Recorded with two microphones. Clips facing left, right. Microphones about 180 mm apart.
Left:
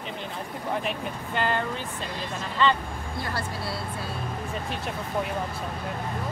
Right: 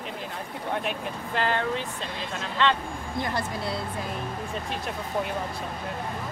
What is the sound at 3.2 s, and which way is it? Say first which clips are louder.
Speech: right 3 dB; 20° right (ahead or behind).